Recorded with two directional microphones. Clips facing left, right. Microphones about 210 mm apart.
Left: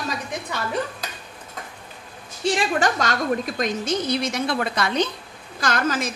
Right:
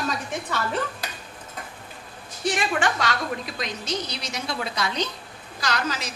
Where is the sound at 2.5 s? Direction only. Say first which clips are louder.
Left 3 dB; 40° left (ahead or behind).